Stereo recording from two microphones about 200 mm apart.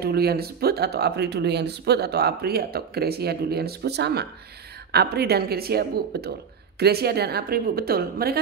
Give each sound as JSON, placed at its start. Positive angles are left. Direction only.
{"t": 0.0, "sound": "speech", "side_deg": -50}